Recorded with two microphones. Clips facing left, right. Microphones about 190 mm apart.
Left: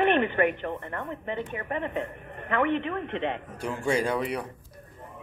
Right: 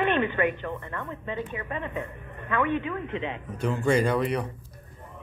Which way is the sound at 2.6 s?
60° left (ahead or behind).